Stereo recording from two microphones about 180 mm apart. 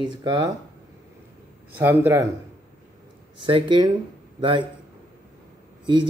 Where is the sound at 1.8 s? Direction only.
15° right (ahead or behind).